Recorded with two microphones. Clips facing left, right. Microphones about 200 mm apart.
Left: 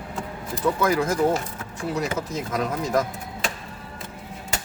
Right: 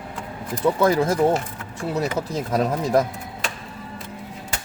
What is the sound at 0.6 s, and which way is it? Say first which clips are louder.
Speech: right 3 dB; 30° right (ahead or behind).